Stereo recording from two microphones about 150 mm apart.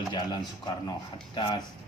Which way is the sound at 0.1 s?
25° left (ahead or behind).